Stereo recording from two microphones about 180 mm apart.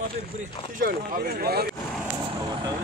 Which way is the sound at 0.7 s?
50° right (ahead or behind).